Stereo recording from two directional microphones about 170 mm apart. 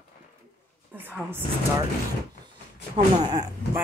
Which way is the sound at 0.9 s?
10° right (ahead or behind).